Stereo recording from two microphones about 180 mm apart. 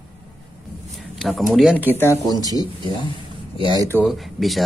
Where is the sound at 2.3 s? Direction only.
20° right (ahead or behind).